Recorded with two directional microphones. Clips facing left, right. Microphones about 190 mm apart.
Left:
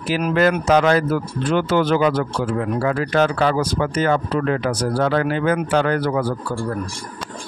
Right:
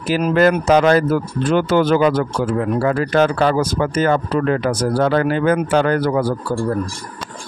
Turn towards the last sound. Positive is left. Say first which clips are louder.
# right 4 dB
turn(degrees=-40)  # may be behind; listen again after turning